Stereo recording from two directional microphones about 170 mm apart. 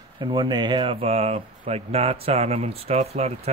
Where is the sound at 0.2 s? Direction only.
25° right (ahead or behind).